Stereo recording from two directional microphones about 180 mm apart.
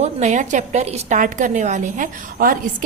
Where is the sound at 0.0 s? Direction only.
40° right (ahead or behind).